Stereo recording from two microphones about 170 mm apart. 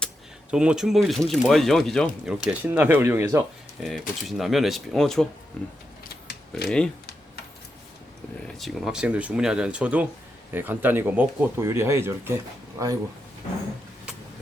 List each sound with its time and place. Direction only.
0.5 s speech: 5° right (ahead or behind)
3.8 s speech: centre (ahead or behind)
6.7 s speech: 5° left (ahead or behind)
8.5 s speech: centre (ahead or behind); by 12.9 s 20° right (ahead or behind)